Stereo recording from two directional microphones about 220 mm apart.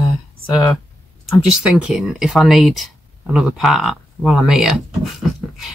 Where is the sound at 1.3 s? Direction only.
5° right (ahead or behind).